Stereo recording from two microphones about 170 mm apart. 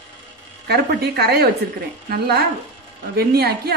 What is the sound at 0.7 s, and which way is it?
Speech, 70° right (ahead or behind).